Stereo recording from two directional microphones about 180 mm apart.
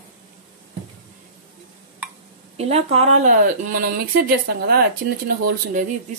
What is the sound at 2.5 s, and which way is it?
Speech, 35° right (ahead or behind).